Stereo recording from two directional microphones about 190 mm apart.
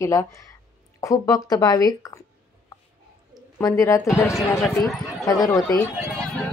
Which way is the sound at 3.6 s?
15° left (ahead or behind).